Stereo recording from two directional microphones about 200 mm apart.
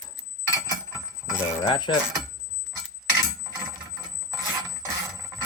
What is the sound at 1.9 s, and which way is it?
Speech, 25° left (ahead or behind).